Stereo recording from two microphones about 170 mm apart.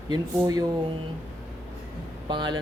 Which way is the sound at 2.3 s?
25° right (ahead or behind).